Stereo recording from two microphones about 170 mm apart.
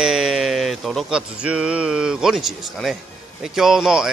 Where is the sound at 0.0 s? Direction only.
5° right (ahead or behind).